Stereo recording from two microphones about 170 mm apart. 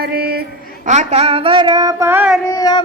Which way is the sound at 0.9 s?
40° right (ahead or behind).